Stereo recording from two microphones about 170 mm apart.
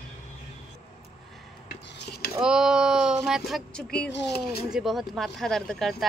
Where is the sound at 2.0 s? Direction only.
70° left (ahead or behind).